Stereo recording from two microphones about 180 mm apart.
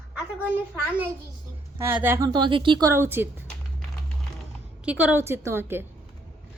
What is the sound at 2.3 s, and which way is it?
Speech, 25° right (ahead or behind).